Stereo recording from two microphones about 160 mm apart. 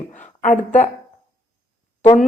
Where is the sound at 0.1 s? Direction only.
50° left (ahead or behind).